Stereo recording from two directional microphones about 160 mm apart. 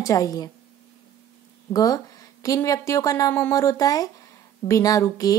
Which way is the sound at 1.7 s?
25° left (ahead or behind).